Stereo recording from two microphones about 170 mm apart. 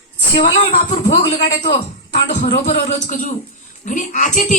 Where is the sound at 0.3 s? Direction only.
30° left (ahead or behind).